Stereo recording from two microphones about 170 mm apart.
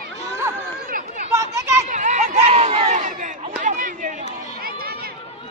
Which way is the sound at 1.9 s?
45° right (ahead or behind).